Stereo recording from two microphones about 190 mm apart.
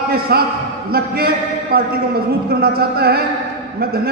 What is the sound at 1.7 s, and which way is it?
A man's voice, 55° right (ahead or behind).